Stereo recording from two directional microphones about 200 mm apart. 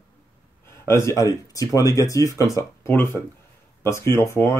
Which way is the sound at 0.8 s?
15° left (ahead or behind).